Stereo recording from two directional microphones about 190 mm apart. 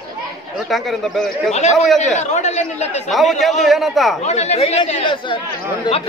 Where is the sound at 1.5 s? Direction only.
35° left (ahead or behind).